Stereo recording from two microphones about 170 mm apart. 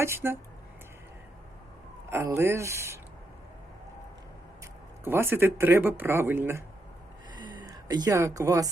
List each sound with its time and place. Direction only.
0.0 s speech: 15° right (ahead or behind)
2.0 s speech: 15° right (ahead or behind)
5.0 s speech: 15° right (ahead or behind)
7.3 s a sound: 25° right (ahead or behind)